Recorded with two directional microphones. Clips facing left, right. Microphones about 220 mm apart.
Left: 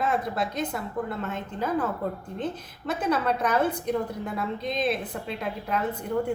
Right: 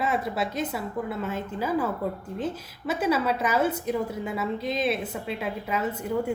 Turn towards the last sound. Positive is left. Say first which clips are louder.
# even
turn(degrees=-5)  # may be behind; listen again after turning